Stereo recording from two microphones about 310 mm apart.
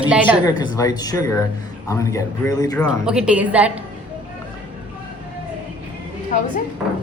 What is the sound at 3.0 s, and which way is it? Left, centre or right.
Speech, centre.